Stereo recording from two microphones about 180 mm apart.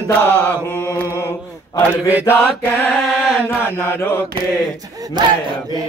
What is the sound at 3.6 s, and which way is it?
Mantra, 10° left (ahead or behind).